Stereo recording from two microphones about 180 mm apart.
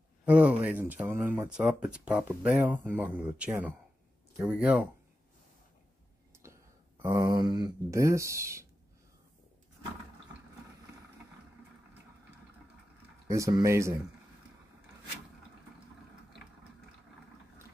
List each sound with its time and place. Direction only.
0.2 s speech: 5° right (ahead or behind)
6.4 s speech: 15° right (ahead or behind)
13.3 s speech: 20° right (ahead or behind)